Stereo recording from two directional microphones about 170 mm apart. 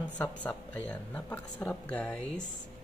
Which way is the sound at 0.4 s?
5° left (ahead or behind).